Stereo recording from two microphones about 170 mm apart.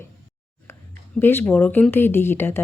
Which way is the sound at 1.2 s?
15° left (ahead or behind).